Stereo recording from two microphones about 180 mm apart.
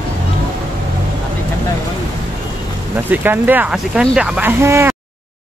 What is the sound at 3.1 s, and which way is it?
Speech, 10° right (ahead or behind).